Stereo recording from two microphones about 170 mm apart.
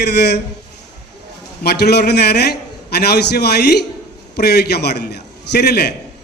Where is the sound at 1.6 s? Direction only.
75° left (ahead or behind).